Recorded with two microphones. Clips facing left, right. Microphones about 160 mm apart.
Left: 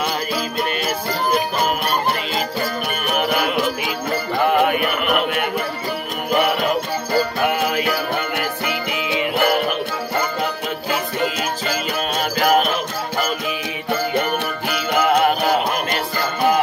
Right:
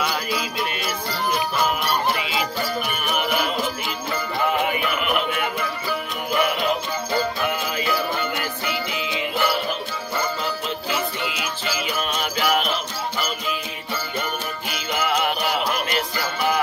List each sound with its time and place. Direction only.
1.9 s music: 45° left (ahead or behind)
6.3 s music: 60° left (ahead or behind)
14.7 s music: 50° left (ahead or behind)